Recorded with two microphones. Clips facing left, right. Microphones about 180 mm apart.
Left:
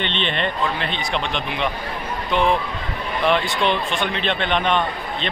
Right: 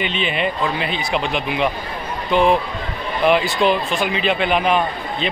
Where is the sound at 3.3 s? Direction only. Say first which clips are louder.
Right 4 dB; 5° right (ahead or behind).